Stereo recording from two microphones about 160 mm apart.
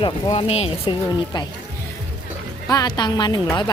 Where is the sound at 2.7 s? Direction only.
25° left (ahead or behind).